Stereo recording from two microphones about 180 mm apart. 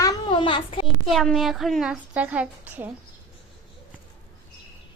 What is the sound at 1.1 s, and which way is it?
A woman's voice, centre (ahead or behind).